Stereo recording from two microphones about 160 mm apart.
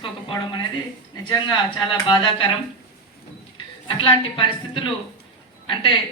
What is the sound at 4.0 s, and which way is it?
A woman's voice, 35° left (ahead or behind).